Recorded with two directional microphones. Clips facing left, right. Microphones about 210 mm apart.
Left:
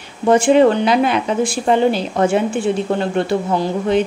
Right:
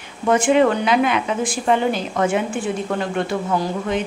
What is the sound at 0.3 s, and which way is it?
A woman's voice, 35° left (ahead or behind).